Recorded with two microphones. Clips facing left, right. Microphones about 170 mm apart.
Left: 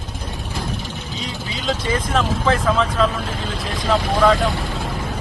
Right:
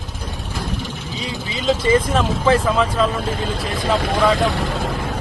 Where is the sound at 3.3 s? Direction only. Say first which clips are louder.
Right 3 dB; 55° right (ahead or behind).